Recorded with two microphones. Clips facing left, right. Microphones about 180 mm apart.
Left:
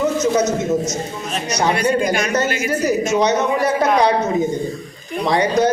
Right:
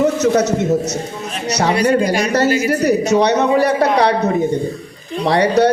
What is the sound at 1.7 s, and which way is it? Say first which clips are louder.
Speech: right 4 dB; 35° right (ahead or behind).